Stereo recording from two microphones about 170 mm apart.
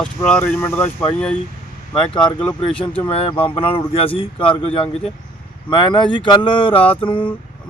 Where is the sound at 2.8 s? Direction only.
30° left (ahead or behind).